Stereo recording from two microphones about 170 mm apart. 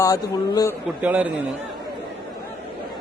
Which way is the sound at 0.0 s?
20° left (ahead or behind).